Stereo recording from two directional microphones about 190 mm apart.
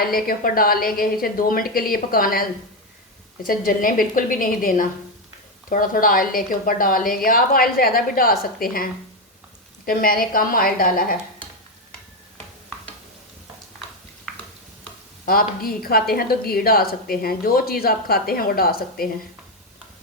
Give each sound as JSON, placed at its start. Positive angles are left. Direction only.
{"t": 0.0, "sound": "a woman's voice", "side_deg": 50}
{"t": 15.3, "sound": "a woman's voice", "side_deg": 50}